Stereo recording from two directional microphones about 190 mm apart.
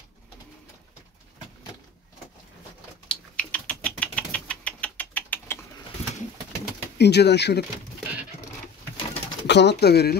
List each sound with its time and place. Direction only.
3.1 s typing: 5° left (ahead or behind)
7.0 s speech: 60° left (ahead or behind)
9.5 s speech: 65° left (ahead or behind)